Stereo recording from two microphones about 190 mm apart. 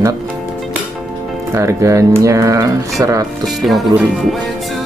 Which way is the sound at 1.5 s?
15° right (ahead or behind).